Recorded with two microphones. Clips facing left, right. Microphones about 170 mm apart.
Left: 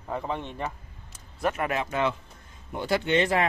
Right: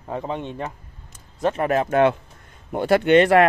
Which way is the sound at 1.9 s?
60° right (ahead or behind).